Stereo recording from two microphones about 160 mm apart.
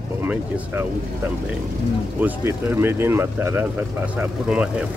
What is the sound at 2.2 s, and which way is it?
Speech, 10° right (ahead or behind).